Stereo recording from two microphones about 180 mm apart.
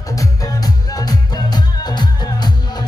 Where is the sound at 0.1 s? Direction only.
20° left (ahead or behind).